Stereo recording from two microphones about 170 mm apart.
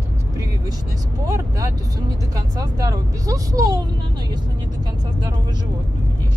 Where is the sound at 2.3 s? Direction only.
20° right (ahead or behind).